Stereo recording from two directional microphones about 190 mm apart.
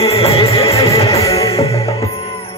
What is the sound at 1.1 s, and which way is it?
Music, 15° left (ahead or behind).